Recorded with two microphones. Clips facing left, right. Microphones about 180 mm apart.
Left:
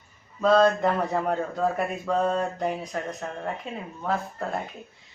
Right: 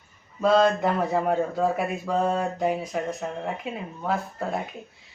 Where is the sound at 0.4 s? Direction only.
5° right (ahead or behind).